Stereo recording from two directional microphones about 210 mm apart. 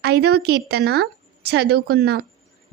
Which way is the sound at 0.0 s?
50° right (ahead or behind).